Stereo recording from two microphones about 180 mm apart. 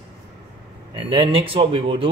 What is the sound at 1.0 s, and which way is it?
Speech, 30° right (ahead or behind).